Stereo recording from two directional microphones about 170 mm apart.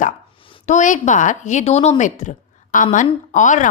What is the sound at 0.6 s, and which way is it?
A woman's voice, 45° left (ahead or behind).